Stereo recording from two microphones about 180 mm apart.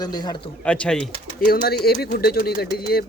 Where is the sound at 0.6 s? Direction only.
5° left (ahead or behind).